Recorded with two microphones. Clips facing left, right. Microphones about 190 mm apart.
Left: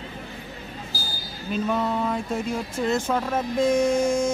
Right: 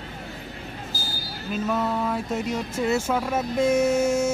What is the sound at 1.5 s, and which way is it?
Speech, 5° right (ahead or behind).